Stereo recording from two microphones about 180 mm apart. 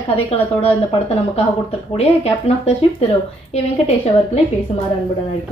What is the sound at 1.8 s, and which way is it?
A woman's voice, 35° left (ahead or behind).